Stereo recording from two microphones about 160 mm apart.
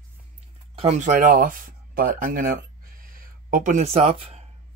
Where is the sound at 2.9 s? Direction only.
60° right (ahead or behind); by 4.4 s 40° right (ahead or behind).